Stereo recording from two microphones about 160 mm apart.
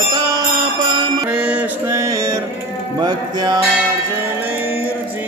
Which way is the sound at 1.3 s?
10° right (ahead or behind).